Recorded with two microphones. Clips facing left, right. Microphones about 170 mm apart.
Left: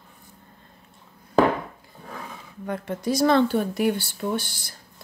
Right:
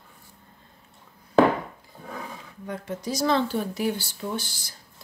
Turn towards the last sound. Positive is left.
turn(degrees=55)  # may be behind; listen again after turning